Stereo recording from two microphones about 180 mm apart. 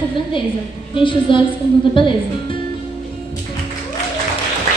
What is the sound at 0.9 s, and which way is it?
Speech, 30° left (ahead or behind).